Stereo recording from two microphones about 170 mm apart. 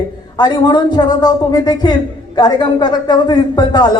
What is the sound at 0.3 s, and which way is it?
A woman's voice, 25° left (ahead or behind).